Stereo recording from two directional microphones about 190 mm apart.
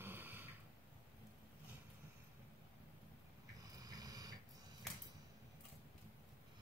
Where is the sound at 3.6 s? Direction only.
20° right (ahead or behind).